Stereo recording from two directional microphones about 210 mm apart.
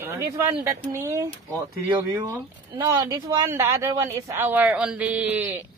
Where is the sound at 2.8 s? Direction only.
15° right (ahead or behind).